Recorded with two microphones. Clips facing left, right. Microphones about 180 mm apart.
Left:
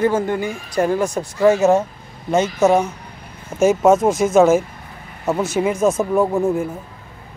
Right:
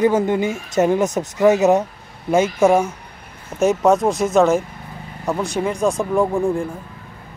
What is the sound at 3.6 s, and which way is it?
Speech, centre (ahead or behind).